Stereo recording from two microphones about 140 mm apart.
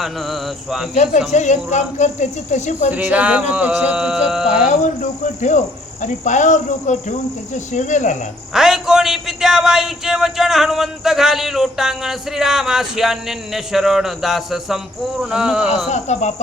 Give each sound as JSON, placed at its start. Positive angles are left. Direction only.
{"t": 0.0, "sound": "a man's voice", "side_deg": 0}
{"t": 1.3, "sound": "speech", "side_deg": 55}
{"t": 2.9, "sound": "a sound", "side_deg": -10}
{"t": 4.7, "sound": "speech", "side_deg": 60}
{"t": 8.5, "sound": "a man's voice", "side_deg": -5}
{"t": 15.9, "sound": "speech", "side_deg": 55}